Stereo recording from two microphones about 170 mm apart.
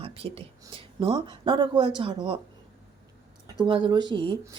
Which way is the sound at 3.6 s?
30° right (ahead or behind).